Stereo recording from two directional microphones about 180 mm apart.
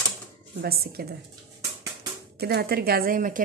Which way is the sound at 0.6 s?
60° right (ahead or behind).